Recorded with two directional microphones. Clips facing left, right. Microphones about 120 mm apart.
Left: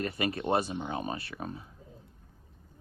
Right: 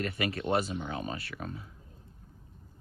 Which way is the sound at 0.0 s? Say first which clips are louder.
Left 1 dB; 25° left (ahead or behind).